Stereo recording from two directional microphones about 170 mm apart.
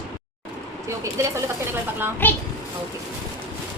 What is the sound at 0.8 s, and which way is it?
Speech, 15° right (ahead or behind).